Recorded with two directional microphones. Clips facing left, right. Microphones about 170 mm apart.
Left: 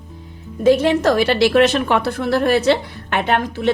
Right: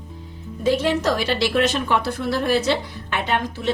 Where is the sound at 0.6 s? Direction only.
55° left (ahead or behind).